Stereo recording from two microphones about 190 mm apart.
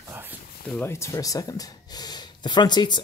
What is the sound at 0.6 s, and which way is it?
Speech, 10° left (ahead or behind).